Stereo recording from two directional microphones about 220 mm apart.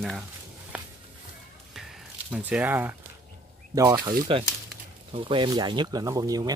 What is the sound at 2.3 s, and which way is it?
Speech, 5° right (ahead or behind).